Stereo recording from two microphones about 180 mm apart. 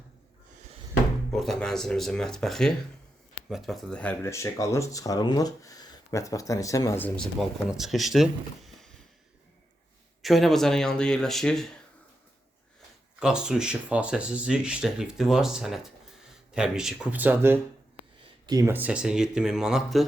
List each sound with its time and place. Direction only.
1.3 s speech: centre (ahead or behind)
7.7 s speech: centre (ahead or behind)
10.2 s speech: centre (ahead or behind)
13.1 s speech: 5° right (ahead or behind)